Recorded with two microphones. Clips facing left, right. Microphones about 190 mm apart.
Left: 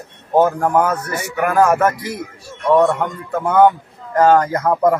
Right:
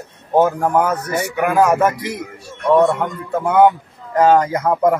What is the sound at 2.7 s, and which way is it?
A man's voice, centre (ahead or behind).